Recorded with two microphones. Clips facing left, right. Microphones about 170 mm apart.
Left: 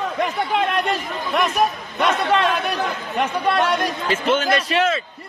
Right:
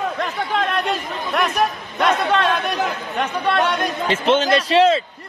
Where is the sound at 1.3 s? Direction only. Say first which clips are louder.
Left 1 dB; centre (ahead or behind).